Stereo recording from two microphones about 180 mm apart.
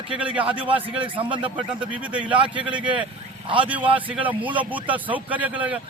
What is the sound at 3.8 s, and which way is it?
Speech, 30° right (ahead or behind).